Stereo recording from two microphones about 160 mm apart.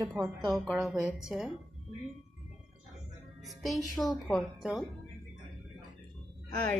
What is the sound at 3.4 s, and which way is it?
A woman's voice, centre (ahead or behind).